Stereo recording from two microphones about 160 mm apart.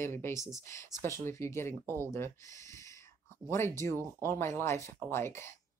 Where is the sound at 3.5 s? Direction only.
15° left (ahead or behind).